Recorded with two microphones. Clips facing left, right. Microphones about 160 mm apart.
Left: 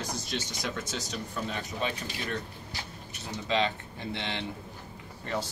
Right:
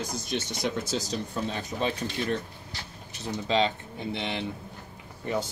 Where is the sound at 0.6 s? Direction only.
35° right (ahead or behind).